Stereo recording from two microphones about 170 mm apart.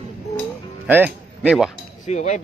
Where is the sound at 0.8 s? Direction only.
10° right (ahead or behind).